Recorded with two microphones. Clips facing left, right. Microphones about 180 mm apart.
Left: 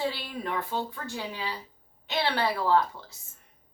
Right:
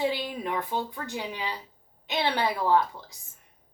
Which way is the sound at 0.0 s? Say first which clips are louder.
Right 3 dB; 15° right (ahead or behind).